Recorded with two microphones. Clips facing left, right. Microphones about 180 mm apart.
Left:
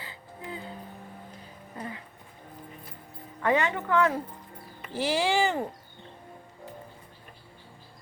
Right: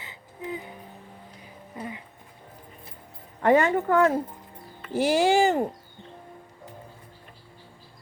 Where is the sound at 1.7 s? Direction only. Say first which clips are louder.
Right 2 dB; 10° right (ahead or behind).